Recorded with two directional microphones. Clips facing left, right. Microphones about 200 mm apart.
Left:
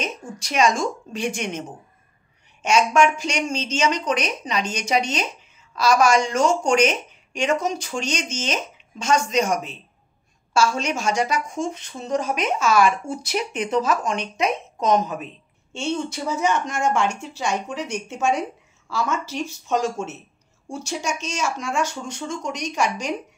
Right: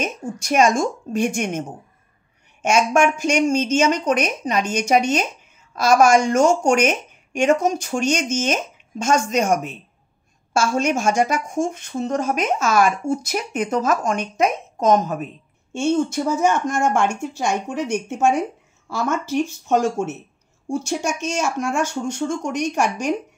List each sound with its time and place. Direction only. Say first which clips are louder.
0.0 s speech: right 4 dB; 50° right (ahead or behind)